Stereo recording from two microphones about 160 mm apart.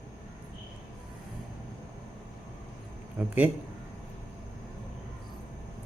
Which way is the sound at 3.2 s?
10° right (ahead or behind).